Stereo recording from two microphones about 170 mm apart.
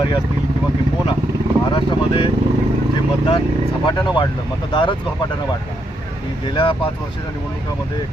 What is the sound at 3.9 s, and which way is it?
Speech, 25° left (ahead or behind).